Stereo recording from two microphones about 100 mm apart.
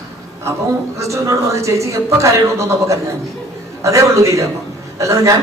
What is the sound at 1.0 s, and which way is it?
Speech, 30° right (ahead or behind).